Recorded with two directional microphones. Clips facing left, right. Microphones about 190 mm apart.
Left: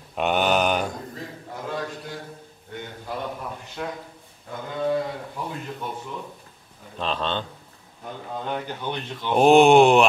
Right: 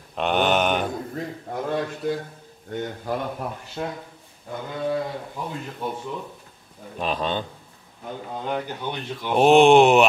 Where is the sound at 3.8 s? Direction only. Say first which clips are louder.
Right 2 dB; 30° right (ahead or behind).